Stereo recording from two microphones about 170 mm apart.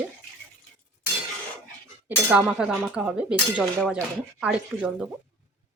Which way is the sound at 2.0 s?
10° right (ahead or behind).